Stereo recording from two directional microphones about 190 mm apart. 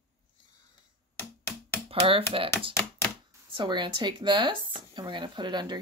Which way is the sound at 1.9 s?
30° right (ahead or behind).